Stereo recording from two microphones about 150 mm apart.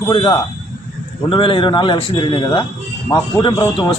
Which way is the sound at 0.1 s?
35° left (ahead or behind).